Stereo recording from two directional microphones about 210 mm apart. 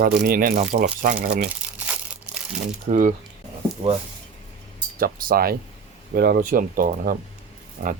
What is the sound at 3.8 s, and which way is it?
Speech, 25° right (ahead or behind).